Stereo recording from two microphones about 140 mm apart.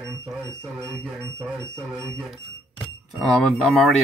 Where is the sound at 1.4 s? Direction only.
10° right (ahead or behind).